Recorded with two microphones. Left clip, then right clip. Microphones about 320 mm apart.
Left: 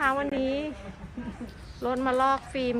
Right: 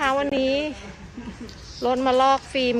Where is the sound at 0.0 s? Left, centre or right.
Centre.